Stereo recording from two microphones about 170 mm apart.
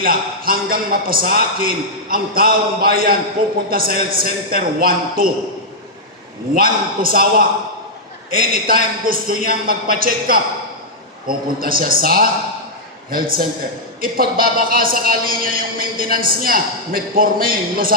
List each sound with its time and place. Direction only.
0.0 s a man's voice: 55° right (ahead or behind)
6.5 s a man's voice: 55° right (ahead or behind)